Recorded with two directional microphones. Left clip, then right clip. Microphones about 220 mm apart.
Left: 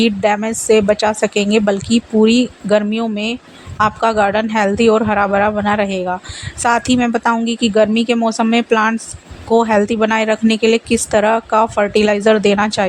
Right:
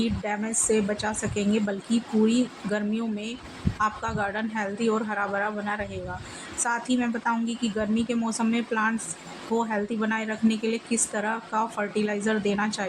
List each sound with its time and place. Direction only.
0.0 s a woman's voice: 45° left (ahead or behind)